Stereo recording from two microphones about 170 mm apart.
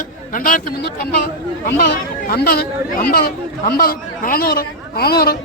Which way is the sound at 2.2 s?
65° left (ahead or behind).